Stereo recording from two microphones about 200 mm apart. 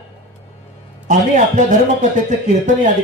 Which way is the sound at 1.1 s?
40° right (ahead or behind).